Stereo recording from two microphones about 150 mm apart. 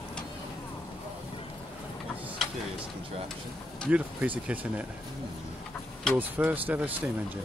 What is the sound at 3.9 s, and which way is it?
Speech, 10° right (ahead or behind).